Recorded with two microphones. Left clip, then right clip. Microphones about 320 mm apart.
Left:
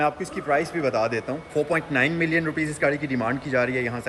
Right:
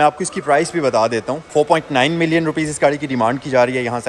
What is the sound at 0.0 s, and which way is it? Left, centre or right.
A man's voice, right.